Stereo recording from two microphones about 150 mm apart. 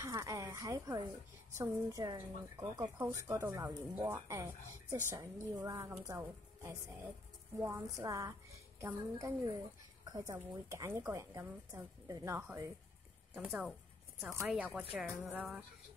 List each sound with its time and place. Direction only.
0.0 s speech: 20° right (ahead or behind)
13.4 s a woman's voice: 5° right (ahead or behind)